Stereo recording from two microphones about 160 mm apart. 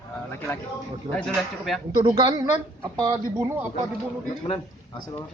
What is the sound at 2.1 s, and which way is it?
A man's voice, 30° right (ahead or behind).